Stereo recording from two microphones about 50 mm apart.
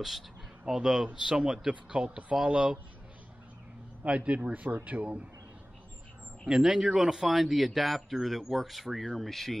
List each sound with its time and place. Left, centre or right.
0.7 s speech: centre
4.0 s speech: right
6.5 s speech: centre